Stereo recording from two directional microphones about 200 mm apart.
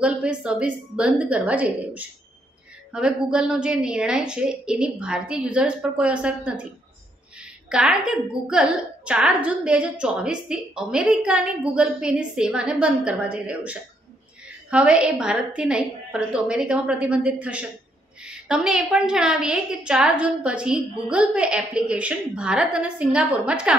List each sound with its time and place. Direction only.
0.0 s a woman's voice: 5° right (ahead or behind)
14.7 s a woman's voice: 5° right (ahead or behind)